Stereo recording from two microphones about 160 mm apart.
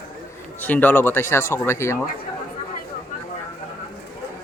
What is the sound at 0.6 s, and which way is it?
Speech, 10° left (ahead or behind).